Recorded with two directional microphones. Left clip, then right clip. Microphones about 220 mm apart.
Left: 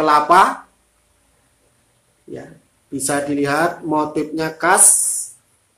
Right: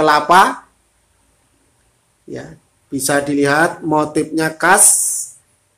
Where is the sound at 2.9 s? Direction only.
30° right (ahead or behind).